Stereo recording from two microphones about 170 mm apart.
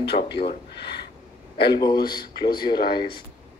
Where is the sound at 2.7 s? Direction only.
40° left (ahead or behind).